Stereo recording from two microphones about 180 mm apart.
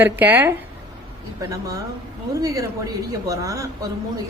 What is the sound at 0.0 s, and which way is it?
A woman's voice, 10° right (ahead or behind).